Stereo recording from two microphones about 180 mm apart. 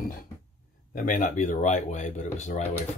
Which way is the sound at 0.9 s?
45° left (ahead or behind).